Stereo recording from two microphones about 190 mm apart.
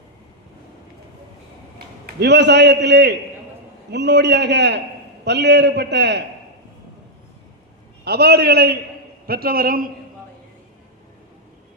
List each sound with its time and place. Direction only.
2.0 s a man's voice: 65° right (ahead or behind)
8.0 s a man's voice: 55° right (ahead or behind)